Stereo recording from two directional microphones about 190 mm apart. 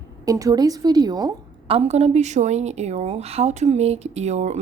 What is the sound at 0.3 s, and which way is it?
A woman's voice, 20° right (ahead or behind).